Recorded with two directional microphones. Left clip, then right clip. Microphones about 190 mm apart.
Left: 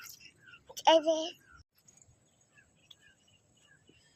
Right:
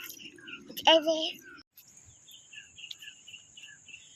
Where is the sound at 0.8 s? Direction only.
5° right (ahead or behind).